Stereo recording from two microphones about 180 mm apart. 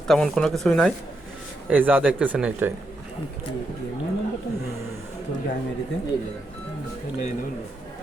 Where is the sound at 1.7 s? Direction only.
10° right (ahead or behind).